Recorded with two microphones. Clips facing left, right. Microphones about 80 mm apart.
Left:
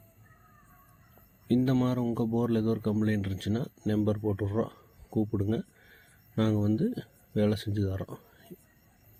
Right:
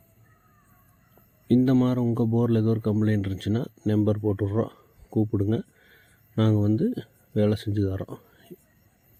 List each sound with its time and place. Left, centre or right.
1.5 s speech: right